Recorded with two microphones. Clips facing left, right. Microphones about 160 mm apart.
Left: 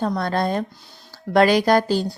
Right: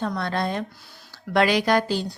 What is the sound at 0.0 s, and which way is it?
Speech, 40° left (ahead or behind).